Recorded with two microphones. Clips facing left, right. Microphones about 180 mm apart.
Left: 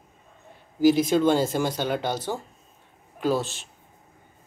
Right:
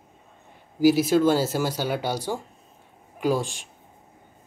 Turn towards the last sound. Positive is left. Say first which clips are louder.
# right 1 dB
turn(degrees=-15)  # may be behind; listen again after turning